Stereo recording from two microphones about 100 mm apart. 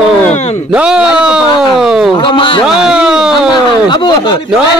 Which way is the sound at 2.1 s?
55° left (ahead or behind).